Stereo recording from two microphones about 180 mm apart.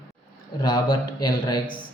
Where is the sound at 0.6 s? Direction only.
20° left (ahead or behind).